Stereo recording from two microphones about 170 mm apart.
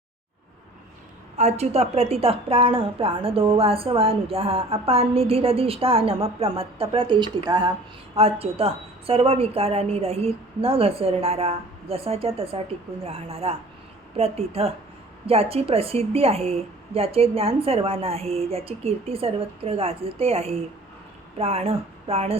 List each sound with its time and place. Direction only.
1.4 s a woman's voice: 40° right (ahead or behind)